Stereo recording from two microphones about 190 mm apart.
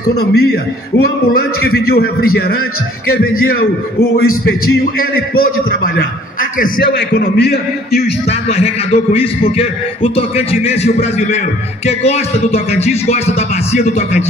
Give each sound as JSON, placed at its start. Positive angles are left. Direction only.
{"t": 0.2, "sound": "a man's voice", "side_deg": 55}
{"t": 5.3, "sound": "a man's voice", "side_deg": 50}
{"t": 8.3, "sound": "speech", "side_deg": 35}